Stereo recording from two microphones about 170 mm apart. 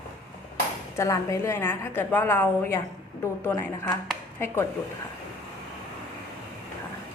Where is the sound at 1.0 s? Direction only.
20° left (ahead or behind).